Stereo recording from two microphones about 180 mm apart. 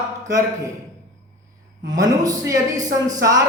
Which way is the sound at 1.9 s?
20° right (ahead or behind).